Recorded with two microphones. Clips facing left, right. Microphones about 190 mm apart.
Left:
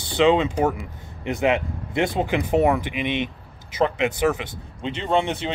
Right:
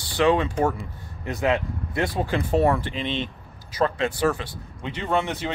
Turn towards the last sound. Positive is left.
turn(degrees=20)  # may be behind; listen again after turning